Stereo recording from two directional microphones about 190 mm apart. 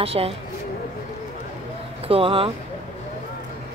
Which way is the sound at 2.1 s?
30° right (ahead or behind).